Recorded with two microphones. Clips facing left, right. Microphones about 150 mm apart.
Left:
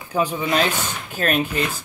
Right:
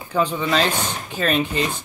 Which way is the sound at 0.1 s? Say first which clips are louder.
Right 1 dB; 10° left (ahead or behind).